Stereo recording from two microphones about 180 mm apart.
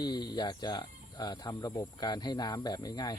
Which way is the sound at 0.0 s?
20° left (ahead or behind).